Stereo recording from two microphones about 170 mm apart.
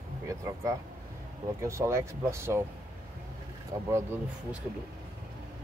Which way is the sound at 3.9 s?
15° right (ahead or behind).